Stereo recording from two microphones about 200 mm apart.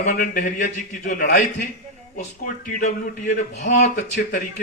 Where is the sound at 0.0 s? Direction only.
40° left (ahead or behind).